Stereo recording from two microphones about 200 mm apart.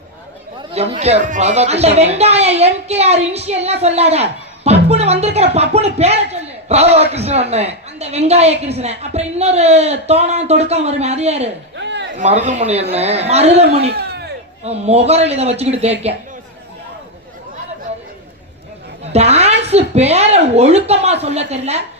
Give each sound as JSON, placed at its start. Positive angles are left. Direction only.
{"t": 0.7, "sound": "a woman's voice", "side_deg": -30}
{"t": 11.8, "sound": "a sound", "side_deg": -60}
{"t": 12.1, "sound": "a woman's voice", "side_deg": -35}
{"t": 13.9, "sound": "a sound", "side_deg": -55}
{"t": 14.6, "sound": "a woman's voice", "side_deg": -30}
{"t": 19.1, "sound": "a woman's voice", "side_deg": -30}